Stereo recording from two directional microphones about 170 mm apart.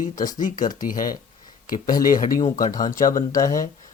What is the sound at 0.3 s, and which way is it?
Speech, 50° left (ahead or behind).